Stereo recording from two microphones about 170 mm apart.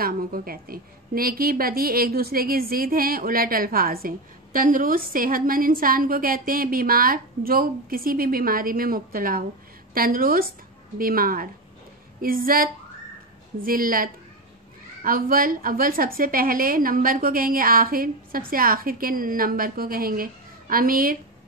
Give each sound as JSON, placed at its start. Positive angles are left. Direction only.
{"t": 0.0, "sound": "a woman's voice", "side_deg": -60}